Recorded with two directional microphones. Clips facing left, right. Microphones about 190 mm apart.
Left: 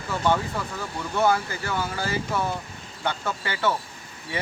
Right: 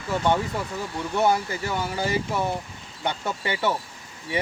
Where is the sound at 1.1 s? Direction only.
15° right (ahead or behind).